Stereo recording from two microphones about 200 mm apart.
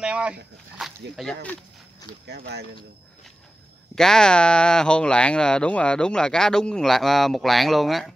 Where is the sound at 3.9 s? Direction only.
5° left (ahead or behind).